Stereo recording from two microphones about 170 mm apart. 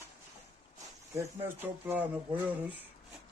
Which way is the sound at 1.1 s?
15° right (ahead or behind).